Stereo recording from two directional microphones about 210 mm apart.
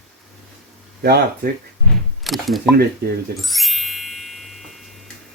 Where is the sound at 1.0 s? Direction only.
50° right (ahead or behind).